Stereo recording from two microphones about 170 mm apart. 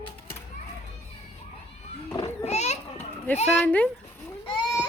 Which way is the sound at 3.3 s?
10° left (ahead or behind).